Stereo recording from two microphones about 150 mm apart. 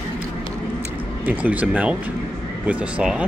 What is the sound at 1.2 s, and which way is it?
Speech, 10° right (ahead or behind).